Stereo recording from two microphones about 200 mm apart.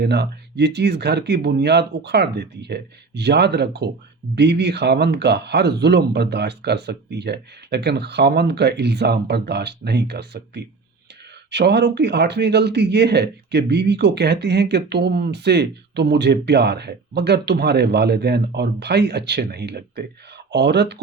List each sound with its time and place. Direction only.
0.0 s a man's voice: 55° right (ahead or behind)